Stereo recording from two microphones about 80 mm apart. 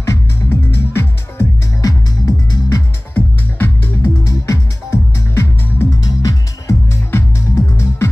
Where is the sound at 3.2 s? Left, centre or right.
Left.